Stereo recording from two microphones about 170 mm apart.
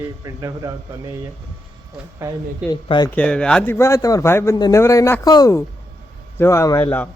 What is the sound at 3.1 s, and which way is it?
A man's voice, 5° left (ahead or behind).